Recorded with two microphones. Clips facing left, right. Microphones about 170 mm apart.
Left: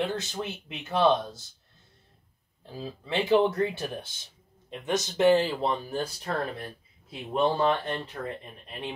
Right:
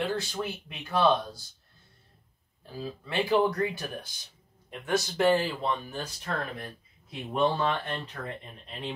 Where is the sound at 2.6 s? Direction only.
20° left (ahead or behind).